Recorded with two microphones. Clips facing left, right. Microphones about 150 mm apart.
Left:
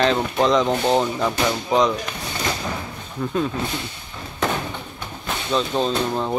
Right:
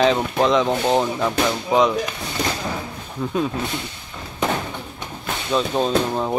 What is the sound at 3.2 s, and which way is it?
Speech, 10° right (ahead or behind).